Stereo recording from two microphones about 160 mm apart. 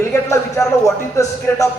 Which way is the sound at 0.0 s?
15° left (ahead or behind).